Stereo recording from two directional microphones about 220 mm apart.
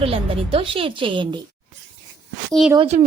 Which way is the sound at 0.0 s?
25° right (ahead or behind).